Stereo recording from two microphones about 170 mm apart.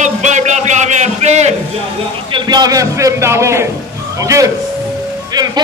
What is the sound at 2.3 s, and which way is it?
A man's voice, 25° right (ahead or behind).